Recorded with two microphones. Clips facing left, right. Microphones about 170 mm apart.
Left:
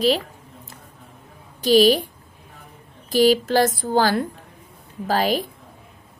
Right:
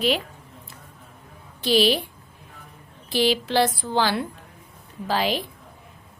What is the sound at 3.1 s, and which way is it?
A woman's voice, 45° left (ahead or behind).